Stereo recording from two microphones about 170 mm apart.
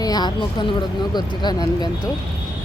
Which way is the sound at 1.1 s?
25° left (ahead or behind).